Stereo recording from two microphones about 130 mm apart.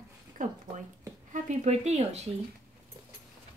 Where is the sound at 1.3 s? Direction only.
65° right (ahead or behind).